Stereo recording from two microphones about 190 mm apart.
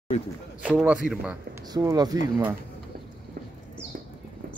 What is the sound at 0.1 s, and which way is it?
Speech, 35° left (ahead or behind).